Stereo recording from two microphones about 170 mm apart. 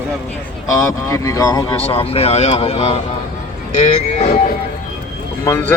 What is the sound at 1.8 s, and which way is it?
Speech, 35° left (ahead or behind).